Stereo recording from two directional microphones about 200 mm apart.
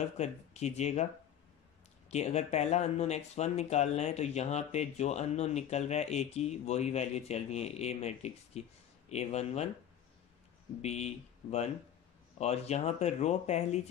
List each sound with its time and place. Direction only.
0.2 s speech: 35° left (ahead or behind)
2.0 s speech: 35° left (ahead or behind)
10.8 s speech: 35° left (ahead or behind)
12.4 s speech: 35° left (ahead or behind)